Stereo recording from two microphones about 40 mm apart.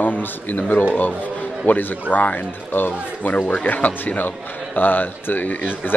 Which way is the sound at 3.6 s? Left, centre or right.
Left.